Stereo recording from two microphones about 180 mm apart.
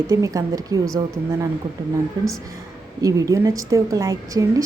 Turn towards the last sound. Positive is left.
turn(degrees=-20)  # may be behind; listen again after turning